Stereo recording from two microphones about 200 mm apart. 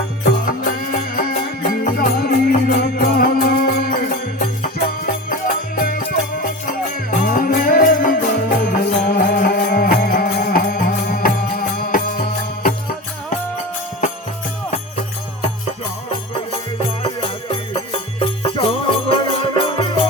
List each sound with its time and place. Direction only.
0.4 s music: 45° left (ahead or behind)
17.0 s music: 25° left (ahead or behind)